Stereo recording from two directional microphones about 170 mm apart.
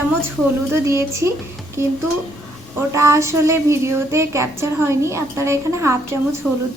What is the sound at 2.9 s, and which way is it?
Child singing, 20° right (ahead or behind).